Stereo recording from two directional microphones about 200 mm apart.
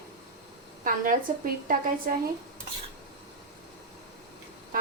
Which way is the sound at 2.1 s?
50° right (ahead or behind).